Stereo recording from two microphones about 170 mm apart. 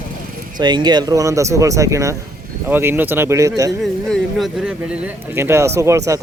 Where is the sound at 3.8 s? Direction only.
Centre (ahead or behind).